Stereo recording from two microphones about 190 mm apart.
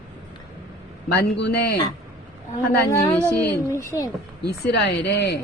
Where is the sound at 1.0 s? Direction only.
55° left (ahead or behind).